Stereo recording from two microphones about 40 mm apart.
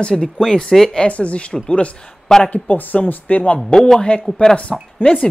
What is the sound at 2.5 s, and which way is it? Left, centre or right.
Speech, left.